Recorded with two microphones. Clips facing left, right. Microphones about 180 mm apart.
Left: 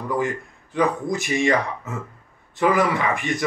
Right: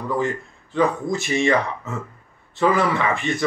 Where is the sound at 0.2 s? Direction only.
15° left (ahead or behind).